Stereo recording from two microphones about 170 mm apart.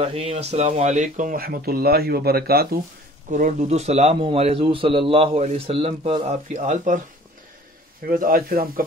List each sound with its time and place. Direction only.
0.0 s speech: 35° right (ahead or behind); by 2.8 s 65° right (ahead or behind)
3.3 s speech: 50° right (ahead or behind)
8.1 s speech: 55° right (ahead or behind)